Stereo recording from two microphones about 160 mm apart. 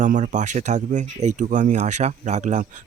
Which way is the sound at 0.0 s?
50° right (ahead or behind).